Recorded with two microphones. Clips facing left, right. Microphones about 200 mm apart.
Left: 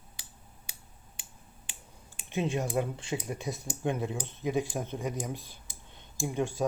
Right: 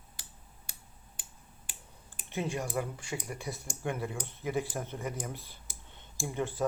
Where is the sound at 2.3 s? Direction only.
20° left (ahead or behind).